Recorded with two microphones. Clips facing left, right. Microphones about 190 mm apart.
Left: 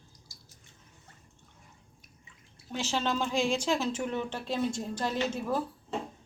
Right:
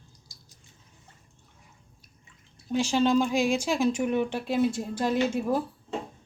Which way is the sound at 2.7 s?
15° right (ahead or behind).